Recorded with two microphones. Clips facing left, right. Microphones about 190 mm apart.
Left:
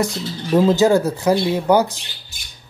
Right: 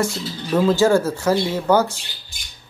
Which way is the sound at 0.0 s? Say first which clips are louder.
Left 1 dB; 20° left (ahead or behind).